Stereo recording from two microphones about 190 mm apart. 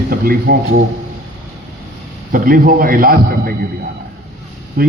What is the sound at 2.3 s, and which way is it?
A man's voice, 45° right (ahead or behind).